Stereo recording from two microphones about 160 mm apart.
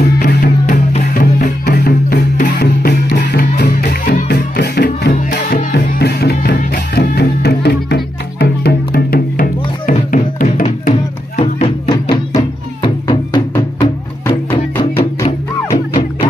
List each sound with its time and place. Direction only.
0.2 s music: 55° left (ahead or behind)
2.5 s music: 85° left
5.1 s music: 55° left (ahead or behind)
11.6 s music: 30° left (ahead or behind)